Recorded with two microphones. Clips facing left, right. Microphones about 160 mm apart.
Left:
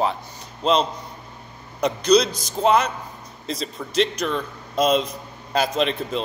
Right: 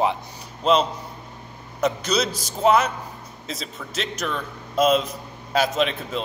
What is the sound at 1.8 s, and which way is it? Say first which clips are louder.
Speech: left 5 dB; 5° right (ahead or behind).